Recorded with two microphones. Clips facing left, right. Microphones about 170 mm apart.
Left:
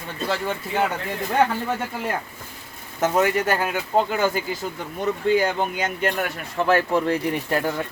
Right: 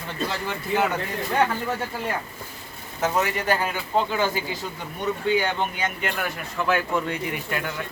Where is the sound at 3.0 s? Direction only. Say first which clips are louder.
Left 4 dB; 50° left (ahead or behind).